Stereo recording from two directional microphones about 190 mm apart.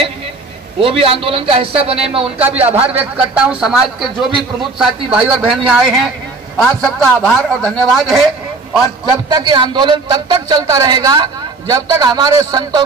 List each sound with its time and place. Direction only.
0.7 s a man's voice: 30° right (ahead or behind)
3.2 s a man's voice: 5° right (ahead or behind)
9.3 s a man's voice: 20° right (ahead or behind)